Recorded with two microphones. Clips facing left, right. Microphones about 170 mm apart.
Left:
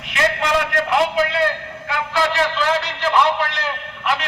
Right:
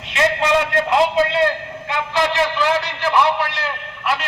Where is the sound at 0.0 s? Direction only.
25° right (ahead or behind).